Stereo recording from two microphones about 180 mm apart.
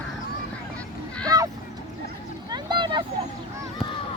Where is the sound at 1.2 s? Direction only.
20° right (ahead or behind).